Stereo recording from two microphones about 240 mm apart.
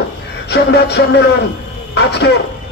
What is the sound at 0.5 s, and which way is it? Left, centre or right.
Speech, left.